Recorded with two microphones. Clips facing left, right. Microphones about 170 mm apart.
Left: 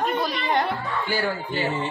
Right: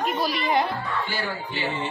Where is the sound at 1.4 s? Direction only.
45° left (ahead or behind).